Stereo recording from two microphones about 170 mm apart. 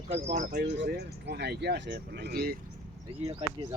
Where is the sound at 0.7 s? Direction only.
80° right.